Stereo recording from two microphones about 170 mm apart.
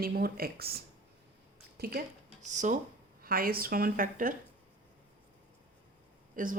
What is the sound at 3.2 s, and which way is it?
Speech, 60° right (ahead or behind).